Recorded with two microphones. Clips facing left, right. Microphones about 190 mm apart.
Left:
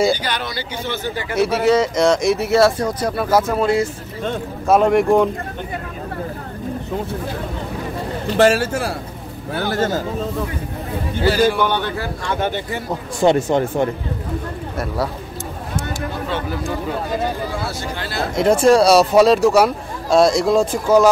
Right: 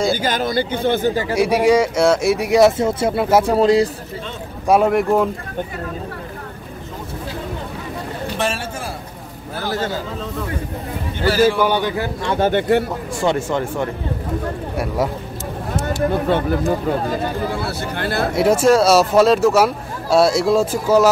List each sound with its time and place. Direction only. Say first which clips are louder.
0.1 s speech: right 3 dB; 45° right (ahead or behind)
1.3 s speech: even; 10° right (ahead or behind); by 3.9 s 35° right (ahead or behind)
4.6 s speech: left 1 dB; 5° right (ahead or behind)
8.4 s a man's voice: left 11 dB; 75° left (ahead or behind)
9.8 s a man's voice: left 4 dB; 45° left (ahead or behind)
11.3 s speech: right 4 dB; 5° right (ahead or behind)
12.5 s speech: right 10 dB; 65° right (ahead or behind)
13.2 s speech: left 4 dB; 20° left (ahead or behind)
16.3 s speech: right 6 dB; 55° right (ahead or behind)
18.3 s speech: left 1 dB; 5° right (ahead or behind)